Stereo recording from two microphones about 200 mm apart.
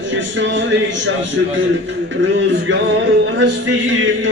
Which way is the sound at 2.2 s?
65° right (ahead or behind).